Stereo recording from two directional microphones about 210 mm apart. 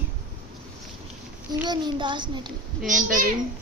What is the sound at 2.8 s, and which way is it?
Speech, 40° right (ahead or behind).